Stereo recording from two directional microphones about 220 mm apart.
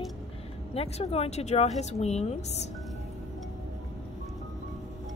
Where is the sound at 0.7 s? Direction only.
30° left (ahead or behind).